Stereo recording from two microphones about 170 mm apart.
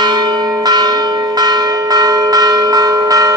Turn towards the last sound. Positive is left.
turn(degrees=-20)  # may be behind; listen again after turning